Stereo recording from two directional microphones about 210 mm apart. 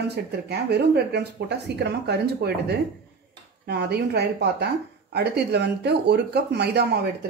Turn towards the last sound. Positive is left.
turn(degrees=-50)  # may be behind; listen again after turning